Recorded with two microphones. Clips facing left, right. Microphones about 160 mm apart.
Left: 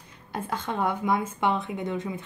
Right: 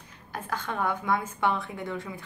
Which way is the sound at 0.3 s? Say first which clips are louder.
Left 3 dB; 25° left (ahead or behind).